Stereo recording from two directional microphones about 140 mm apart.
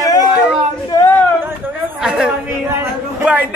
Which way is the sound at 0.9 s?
25° left (ahead or behind).